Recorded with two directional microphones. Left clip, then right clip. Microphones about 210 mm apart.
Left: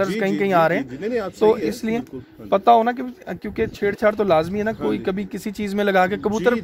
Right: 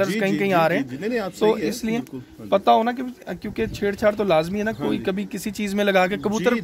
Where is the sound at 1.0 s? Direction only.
35° right (ahead or behind).